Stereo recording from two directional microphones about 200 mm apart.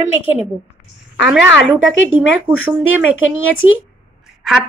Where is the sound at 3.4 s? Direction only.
80° left.